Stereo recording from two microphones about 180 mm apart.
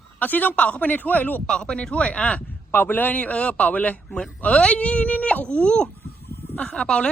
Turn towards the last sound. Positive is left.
turn(degrees=5)  # may be behind; listen again after turning